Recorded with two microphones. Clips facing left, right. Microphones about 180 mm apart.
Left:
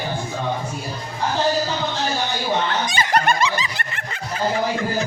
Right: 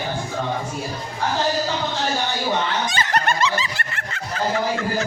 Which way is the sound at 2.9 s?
15° left (ahead or behind).